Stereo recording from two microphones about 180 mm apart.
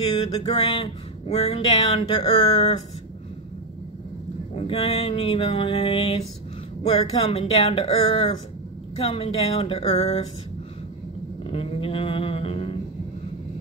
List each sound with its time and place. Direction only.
0.4 s speech: 30° left (ahead or behind)
4.6 s speech: 35° left (ahead or behind)
11.5 s a sound: 30° left (ahead or behind)